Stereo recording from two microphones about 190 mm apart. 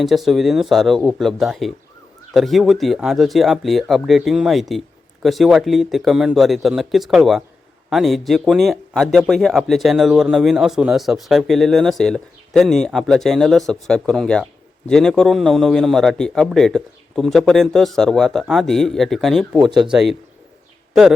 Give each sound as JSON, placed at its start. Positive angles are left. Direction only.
{"t": 0.0, "sound": "speech", "side_deg": 0}
{"t": 19.5, "sound": "speech", "side_deg": -20}
{"t": 19.8, "sound": "speech", "side_deg": -5}